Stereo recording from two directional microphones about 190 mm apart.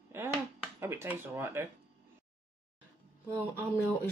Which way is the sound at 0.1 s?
10° right (ahead or behind).